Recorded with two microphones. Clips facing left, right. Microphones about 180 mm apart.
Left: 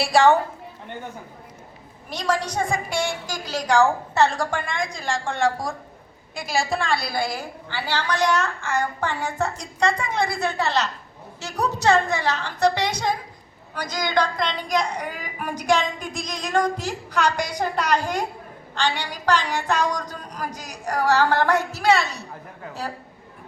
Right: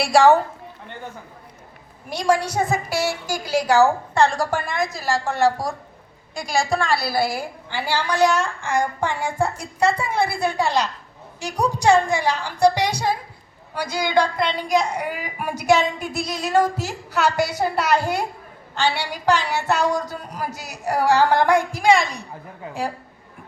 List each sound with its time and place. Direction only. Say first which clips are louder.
0.0 s a woman's voice: right 2 dB; centre (ahead or behind)
2.0 s a woman's voice: right 4 dB; 10° right (ahead or behind)